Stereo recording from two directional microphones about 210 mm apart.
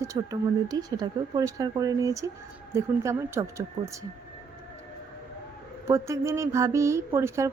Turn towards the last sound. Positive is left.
turn(degrees=-15)  # may be behind; listen again after turning